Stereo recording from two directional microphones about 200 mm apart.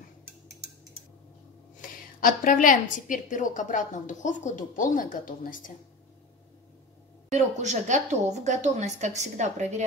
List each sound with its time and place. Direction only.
1.8 s a woman's voice: 45° left (ahead or behind)
7.2 s a woman's voice: 35° right (ahead or behind)